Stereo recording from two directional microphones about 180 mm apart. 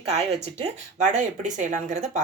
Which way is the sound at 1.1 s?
45° right (ahead or behind).